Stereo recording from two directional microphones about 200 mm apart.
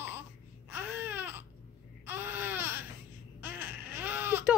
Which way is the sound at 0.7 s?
10° right (ahead or behind).